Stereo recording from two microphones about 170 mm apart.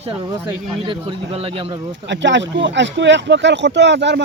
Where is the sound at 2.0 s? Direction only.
90° right.